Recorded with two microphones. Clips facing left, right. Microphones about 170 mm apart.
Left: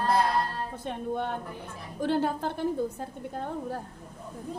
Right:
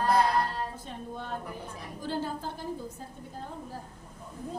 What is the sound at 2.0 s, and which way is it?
Speech, 65° left (ahead or behind).